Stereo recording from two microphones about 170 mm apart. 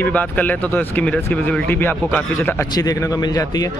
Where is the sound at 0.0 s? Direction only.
10° left (ahead or behind).